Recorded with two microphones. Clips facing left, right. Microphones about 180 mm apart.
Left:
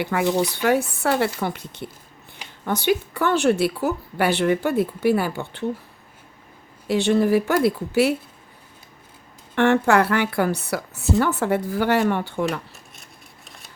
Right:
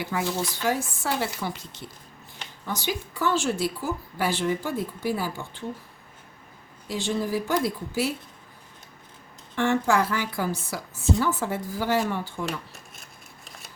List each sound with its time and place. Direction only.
0.0 s a woman's voice: 65° left (ahead or behind)
6.8 s a woman's voice: 65° left (ahead or behind)
9.6 s a woman's voice: 65° left (ahead or behind)
12.7 s scissors: centre (ahead or behind)